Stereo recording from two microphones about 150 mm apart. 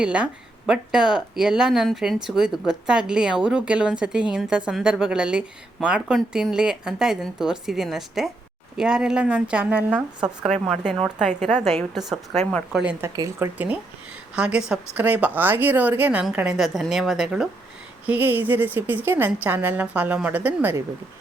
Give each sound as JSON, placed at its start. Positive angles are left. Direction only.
{"t": 0.0, "sound": "a woman's voice", "side_deg": -5}
{"t": 12.8, "sound": "a woman's voice", "side_deg": -10}
{"t": 13.1, "sound": "a woman's voice", "side_deg": -20}